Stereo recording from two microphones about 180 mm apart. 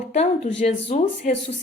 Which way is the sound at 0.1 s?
40° left (ahead or behind).